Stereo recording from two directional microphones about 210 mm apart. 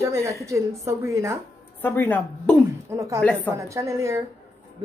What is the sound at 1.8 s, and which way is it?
Speech, 10° left (ahead or behind).